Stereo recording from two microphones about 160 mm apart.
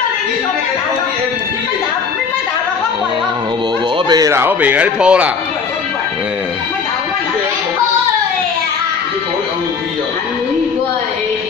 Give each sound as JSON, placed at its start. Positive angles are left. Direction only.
{"t": 4.1, "sound": "a man's voice", "side_deg": -20}